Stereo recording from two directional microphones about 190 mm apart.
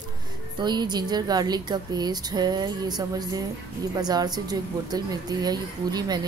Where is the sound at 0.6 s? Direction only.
25° right (ahead or behind).